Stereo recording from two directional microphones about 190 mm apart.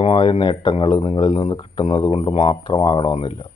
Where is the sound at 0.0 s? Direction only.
30° left (ahead or behind).